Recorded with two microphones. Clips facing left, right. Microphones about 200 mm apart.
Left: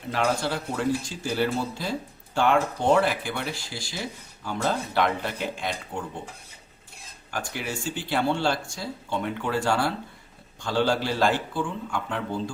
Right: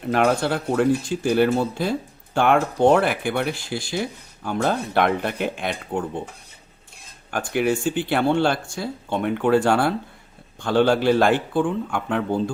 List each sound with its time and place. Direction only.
0.1 s speech: 55° right (ahead or behind)
7.3 s speech: 55° right (ahead or behind)